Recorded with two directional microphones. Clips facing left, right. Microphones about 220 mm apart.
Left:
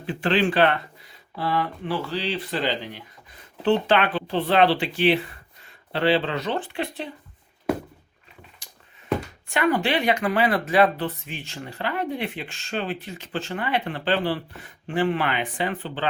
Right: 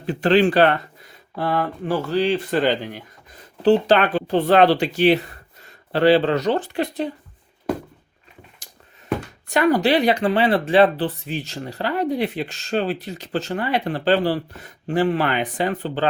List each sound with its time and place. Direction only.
0.0 s speech: 40° right (ahead or behind)
1.4 s speech: 50° right (ahead or behind)
3.6 s speech: 35° right (ahead or behind)
9.5 s speech: 40° right (ahead or behind)